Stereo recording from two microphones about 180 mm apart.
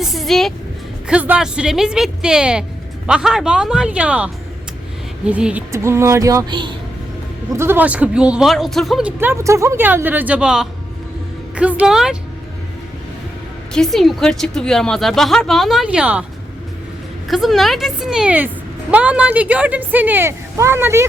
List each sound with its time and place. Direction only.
0.0 s vehicle: centre (ahead or behind)
1.0 s a woman's voice: 5° right (ahead or behind); by 6.7 s 25° right (ahead or behind)
7.5 s speech: 15° right (ahead or behind)
13.7 s a woman's voice: centre (ahead or behind)
17.2 s speech: centre (ahead or behind)